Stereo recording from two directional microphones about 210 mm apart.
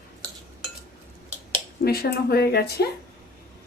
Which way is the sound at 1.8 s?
45° left (ahead or behind).